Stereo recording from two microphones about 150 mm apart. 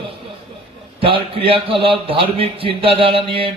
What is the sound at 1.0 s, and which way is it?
A man's voice, 35° right (ahead or behind).